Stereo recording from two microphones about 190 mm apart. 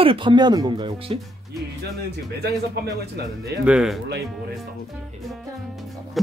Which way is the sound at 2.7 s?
55° right (ahead or behind).